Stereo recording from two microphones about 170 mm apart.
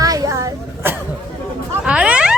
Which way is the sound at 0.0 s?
20° right (ahead or behind).